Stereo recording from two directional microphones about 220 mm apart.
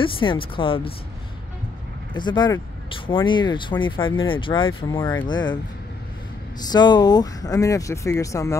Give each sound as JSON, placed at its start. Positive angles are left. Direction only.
{"t": 0.0, "sound": "speech", "side_deg": 20}
{"t": 2.1, "sound": "speech", "side_deg": 20}
{"t": 6.6, "sound": "speech", "side_deg": 20}